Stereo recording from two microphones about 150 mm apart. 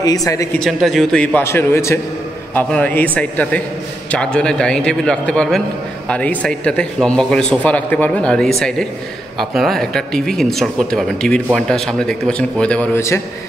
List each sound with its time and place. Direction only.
0.0 s speech: 25° left (ahead or behind)
0.6 s speech: centre (ahead or behind)